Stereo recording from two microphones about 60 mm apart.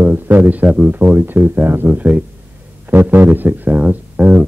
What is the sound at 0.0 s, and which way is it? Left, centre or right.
A man's voice, right.